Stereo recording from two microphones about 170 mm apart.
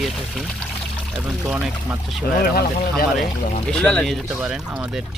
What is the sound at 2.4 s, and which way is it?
Speech, 60° left (ahead or behind).